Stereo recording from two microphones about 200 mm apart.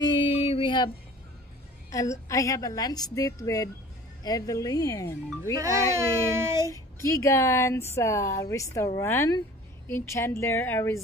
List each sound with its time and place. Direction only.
0.0 s female singing: 25° left (ahead or behind)
1.9 s a woman's voice: 15° left (ahead or behind)
5.6 s speech: 15° right (ahead or behind)
6.7 s a woman's voice: 15° left (ahead or behind)